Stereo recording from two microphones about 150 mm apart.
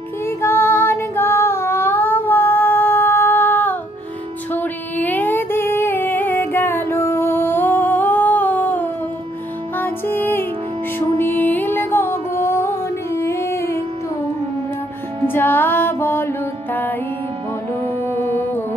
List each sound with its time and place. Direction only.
0.4 s child singing: 15° left (ahead or behind)
4.5 s music: 10° left (ahead or behind)
15.2 s music: 15° left (ahead or behind)